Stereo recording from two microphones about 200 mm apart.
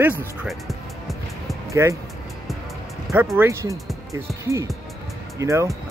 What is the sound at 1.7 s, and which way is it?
Speech, 15° right (ahead or behind).